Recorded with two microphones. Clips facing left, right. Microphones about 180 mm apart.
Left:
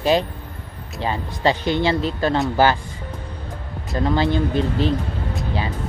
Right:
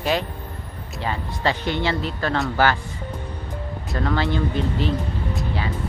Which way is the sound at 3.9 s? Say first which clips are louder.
Left 4 dB; 20° left (ahead or behind).